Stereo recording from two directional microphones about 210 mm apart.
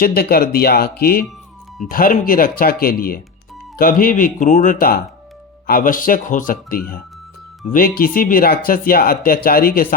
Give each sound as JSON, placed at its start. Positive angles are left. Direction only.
{"t": 0.0, "sound": "speech", "side_deg": 45}